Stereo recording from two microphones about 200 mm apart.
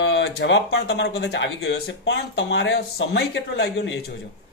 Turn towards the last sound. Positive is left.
turn(degrees=65)  # may be behind; listen again after turning